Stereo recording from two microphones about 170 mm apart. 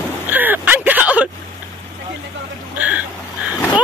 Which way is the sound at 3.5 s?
20° left (ahead or behind).